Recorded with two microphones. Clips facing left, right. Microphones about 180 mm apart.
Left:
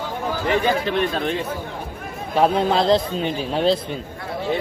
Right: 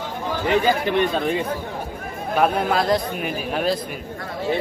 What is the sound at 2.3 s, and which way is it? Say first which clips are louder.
Speech: left 2 dB; 25° left (ahead or behind).